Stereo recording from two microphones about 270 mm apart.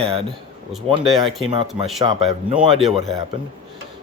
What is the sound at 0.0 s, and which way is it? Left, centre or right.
Speech, right.